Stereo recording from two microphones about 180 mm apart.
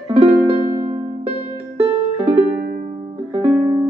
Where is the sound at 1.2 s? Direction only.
35° right (ahead or behind).